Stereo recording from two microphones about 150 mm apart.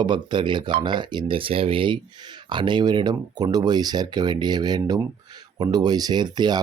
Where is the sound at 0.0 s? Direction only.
30° right (ahead or behind).